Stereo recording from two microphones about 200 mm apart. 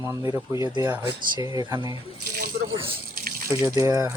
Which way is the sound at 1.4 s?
25° left (ahead or behind).